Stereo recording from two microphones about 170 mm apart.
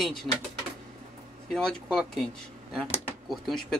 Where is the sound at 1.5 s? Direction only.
Centre (ahead or behind).